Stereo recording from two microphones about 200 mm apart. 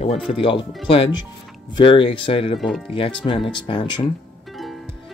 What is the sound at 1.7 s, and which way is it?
Speech, 25° left (ahead or behind).